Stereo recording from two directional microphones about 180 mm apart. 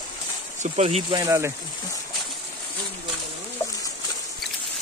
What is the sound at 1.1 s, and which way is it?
Speech, 15° right (ahead or behind).